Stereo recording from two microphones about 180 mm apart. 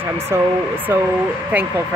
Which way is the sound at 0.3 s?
15° right (ahead or behind).